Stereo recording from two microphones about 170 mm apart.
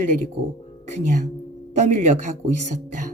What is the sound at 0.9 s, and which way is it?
Speech, 45° right (ahead or behind).